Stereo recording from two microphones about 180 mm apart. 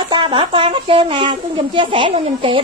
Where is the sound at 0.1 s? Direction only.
25° right (ahead or behind).